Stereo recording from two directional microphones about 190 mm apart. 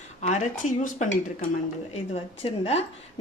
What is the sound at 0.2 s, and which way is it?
Speech, 35° left (ahead or behind).